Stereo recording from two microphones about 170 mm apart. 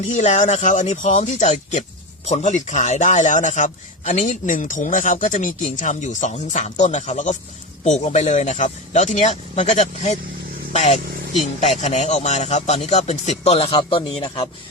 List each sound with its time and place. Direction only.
0.1 s a man's voice: 45° left (ahead or behind)